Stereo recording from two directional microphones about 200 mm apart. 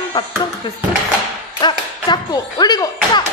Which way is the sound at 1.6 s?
20° left (ahead or behind).